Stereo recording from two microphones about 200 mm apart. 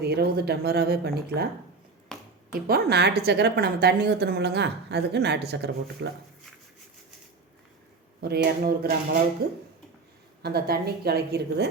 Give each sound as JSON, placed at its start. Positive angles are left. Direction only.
{"t": 0.0, "sound": "speech", "side_deg": -55}
{"t": 2.1, "sound": "a sound", "side_deg": 0}
{"t": 2.6, "sound": "a woman's voice", "side_deg": -50}
{"t": 8.2, "sound": "speech", "side_deg": -50}
{"t": 10.4, "sound": "speech", "side_deg": -50}